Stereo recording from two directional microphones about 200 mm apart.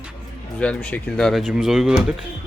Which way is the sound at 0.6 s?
5° left (ahead or behind).